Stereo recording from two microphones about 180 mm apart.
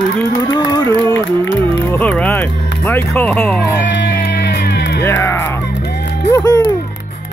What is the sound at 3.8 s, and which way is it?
Music, 70° left (ahead or behind).